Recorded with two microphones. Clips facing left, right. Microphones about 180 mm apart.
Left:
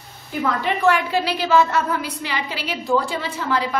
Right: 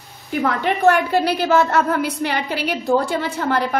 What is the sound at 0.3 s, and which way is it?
A woman's voice, 65° right (ahead or behind).